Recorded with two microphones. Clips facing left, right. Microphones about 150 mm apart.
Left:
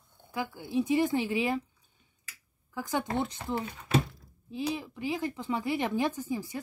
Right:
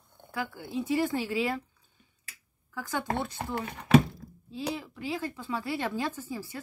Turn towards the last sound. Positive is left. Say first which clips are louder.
# left 4 dB
turn(degrees=15)  # may be behind; listen again after turning